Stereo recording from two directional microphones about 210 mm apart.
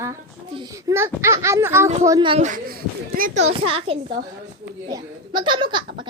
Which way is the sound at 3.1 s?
45° right (ahead or behind).